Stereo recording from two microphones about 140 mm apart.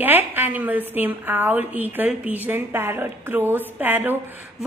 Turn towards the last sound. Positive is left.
turn(degrees=-15)  # may be behind; listen again after turning